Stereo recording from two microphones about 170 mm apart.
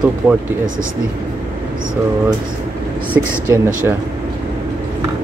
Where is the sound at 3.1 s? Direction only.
15° right (ahead or behind).